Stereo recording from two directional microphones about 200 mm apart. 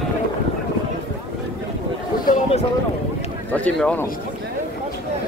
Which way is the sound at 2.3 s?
30° left (ahead or behind).